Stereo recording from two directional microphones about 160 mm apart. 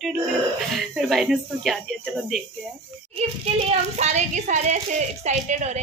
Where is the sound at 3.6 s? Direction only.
45° right (ahead or behind).